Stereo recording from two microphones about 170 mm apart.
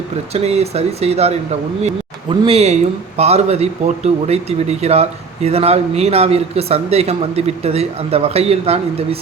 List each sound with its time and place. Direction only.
0.3 s speech: 40° right (ahead or behind)